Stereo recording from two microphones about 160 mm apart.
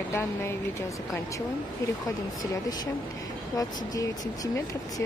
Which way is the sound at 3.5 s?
20° left (ahead or behind).